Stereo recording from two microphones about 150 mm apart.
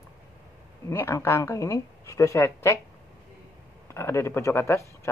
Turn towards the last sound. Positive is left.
turn(degrees=20)  # may be behind; listen again after turning